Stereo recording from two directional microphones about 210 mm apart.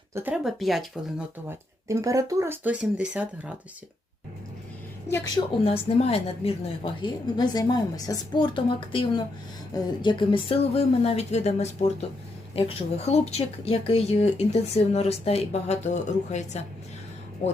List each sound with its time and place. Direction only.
0.1 s speech: 10° right (ahead or behind)
1.9 s speech: 15° right (ahead or behind)
5.6 s speech: 30° left (ahead or behind)